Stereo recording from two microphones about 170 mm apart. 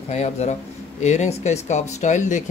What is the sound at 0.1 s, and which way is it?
Speech, 40° left (ahead or behind).